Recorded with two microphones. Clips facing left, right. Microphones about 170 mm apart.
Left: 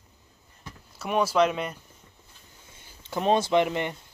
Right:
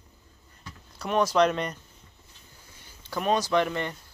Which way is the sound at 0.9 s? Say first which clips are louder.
Even; 5° left (ahead or behind).